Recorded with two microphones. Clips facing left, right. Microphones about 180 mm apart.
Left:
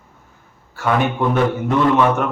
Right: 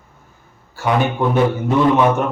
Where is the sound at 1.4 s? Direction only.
10° right (ahead or behind).